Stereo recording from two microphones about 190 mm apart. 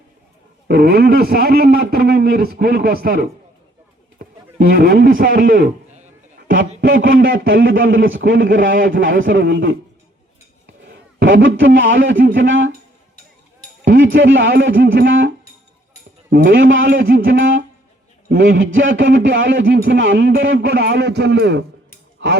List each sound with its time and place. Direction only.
0.7 s a man's voice: 55° right (ahead or behind)
4.5 s a man's voice: 50° right (ahead or behind)
6.5 s a sound: 50° right (ahead or behind)
7.2 s a man's voice: 75° right (ahead or behind)
8.5 s a man's voice: 45° right (ahead or behind)
9.3 s speech: 75° right (ahead or behind)
11.2 s a man's voice: 75° right (ahead or behind)
14.1 s speech: 80° right
16.3 s a man's voice: 50° right (ahead or behind)
17.4 s a man's voice: 90° right; by 22.3 s 70° right (ahead or behind)